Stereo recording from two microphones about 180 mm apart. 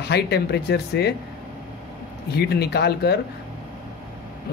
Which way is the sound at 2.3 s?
65° left (ahead or behind).